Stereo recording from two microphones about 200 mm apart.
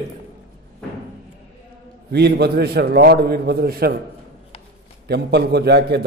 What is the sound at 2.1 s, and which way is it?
A man's voice, 55° right (ahead or behind).